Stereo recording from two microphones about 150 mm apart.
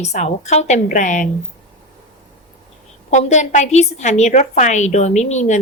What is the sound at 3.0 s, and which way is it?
A woman's voice, 50° left (ahead or behind).